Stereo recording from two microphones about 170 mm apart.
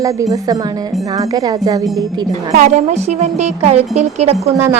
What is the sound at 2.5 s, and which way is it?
Speech, 45° right (ahead or behind).